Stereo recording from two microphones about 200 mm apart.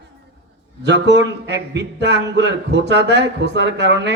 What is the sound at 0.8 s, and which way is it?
A man's voice, 60° right (ahead or behind).